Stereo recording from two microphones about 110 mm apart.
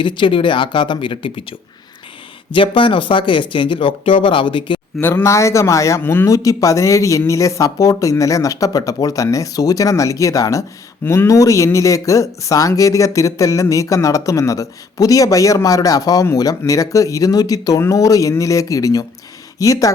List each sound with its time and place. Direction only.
0.0 s speech: 50° left (ahead or behind)
4.9 s a man's voice: 20° left (ahead or behind)